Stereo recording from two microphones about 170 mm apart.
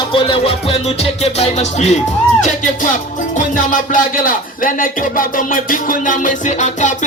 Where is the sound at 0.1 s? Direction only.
30° left (ahead or behind).